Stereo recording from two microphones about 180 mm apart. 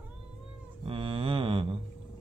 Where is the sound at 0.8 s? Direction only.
30° right (ahead or behind).